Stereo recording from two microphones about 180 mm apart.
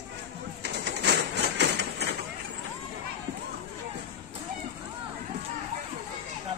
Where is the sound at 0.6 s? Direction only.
70° right (ahead or behind).